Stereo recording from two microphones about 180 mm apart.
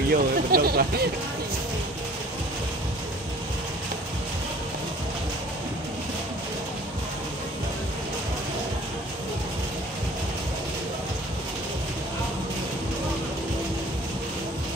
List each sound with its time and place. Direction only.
0.1 s speech: 55° right (ahead or behind)